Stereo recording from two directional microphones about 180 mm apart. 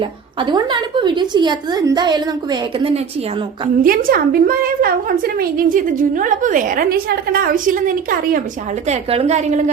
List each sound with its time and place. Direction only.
0.0 s a woman's voice: 25° right (ahead or behind)
3.8 s a woman's voice: 55° right (ahead or behind)
8.9 s a woman's voice: 35° right (ahead or behind)